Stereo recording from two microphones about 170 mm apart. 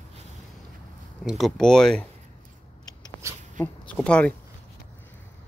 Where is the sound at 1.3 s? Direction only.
Centre (ahead or behind).